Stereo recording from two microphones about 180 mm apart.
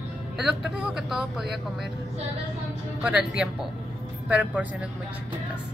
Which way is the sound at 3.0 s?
5° right (ahead or behind).